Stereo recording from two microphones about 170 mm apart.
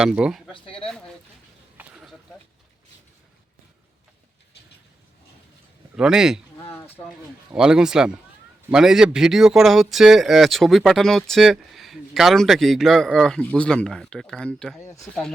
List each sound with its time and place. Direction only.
0.0 s speech: 5° right (ahead or behind)
0.5 s speech: 30° left (ahead or behind)
0.9 s speech: 5° left (ahead or behind)
1.8 s a sound: 5° right (ahead or behind)
6.0 s speech: 5° right (ahead or behind)
6.7 s a sound: 10° left (ahead or behind)
7.5 s speech: 5° right (ahead or behind)
14.8 s speech: 15° left (ahead or behind)